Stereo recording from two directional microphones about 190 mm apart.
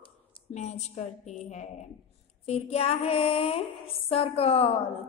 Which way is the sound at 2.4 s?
35° left (ahead or behind).